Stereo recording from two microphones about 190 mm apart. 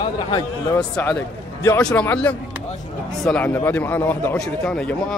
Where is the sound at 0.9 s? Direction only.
10° left (ahead or behind).